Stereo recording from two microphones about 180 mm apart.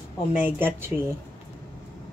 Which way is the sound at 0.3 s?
10° right (ahead or behind).